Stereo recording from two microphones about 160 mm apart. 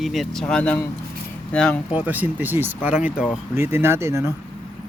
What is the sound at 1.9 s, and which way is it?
Speech, 10° right (ahead or behind).